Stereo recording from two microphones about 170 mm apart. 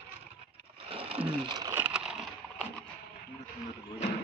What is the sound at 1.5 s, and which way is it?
Speech, 20° right (ahead or behind).